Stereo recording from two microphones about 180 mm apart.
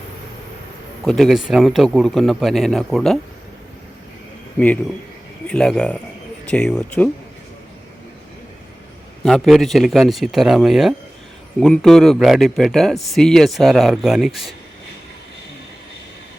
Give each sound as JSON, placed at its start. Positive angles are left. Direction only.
{"t": 1.0, "sound": "a man's voice", "side_deg": 0}
{"t": 4.5, "sound": "a man's voice", "side_deg": 10}
{"t": 9.2, "sound": "a man's voice", "side_deg": 0}